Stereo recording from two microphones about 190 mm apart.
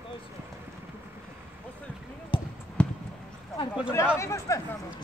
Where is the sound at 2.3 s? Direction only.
25° left (ahead or behind).